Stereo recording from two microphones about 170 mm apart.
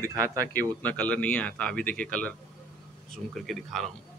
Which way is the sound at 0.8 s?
10° left (ahead or behind).